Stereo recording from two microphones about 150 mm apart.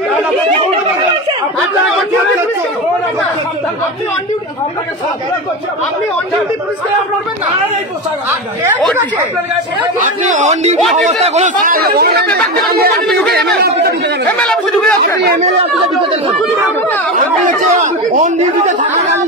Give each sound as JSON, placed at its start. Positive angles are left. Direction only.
{"t": 9.9, "sound": "speech", "side_deg": -55}
{"t": 14.4, "sound": "speech", "side_deg": 5}
{"t": 15.0, "sound": "speech", "side_deg": -75}
{"t": 17.1, "sound": "speech", "side_deg": -55}